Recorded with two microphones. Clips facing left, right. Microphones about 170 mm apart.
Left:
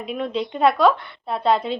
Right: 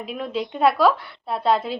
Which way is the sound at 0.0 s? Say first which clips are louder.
Left 2 dB; centre (ahead or behind).